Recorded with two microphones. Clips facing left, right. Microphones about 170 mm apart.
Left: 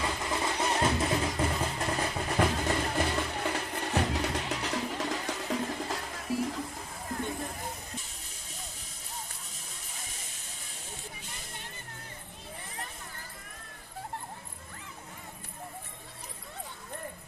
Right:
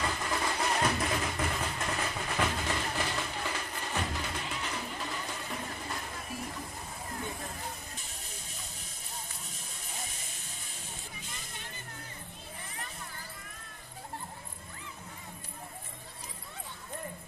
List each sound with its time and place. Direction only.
0.2 s music: 20° left (ahead or behind); by 6.4 s 90° left